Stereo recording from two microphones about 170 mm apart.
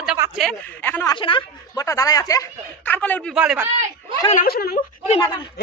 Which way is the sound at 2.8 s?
10° left (ahead or behind).